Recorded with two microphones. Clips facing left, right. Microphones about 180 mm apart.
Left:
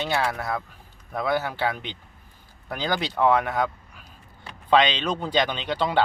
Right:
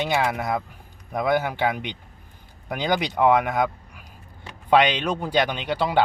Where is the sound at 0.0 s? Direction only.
15° right (ahead or behind).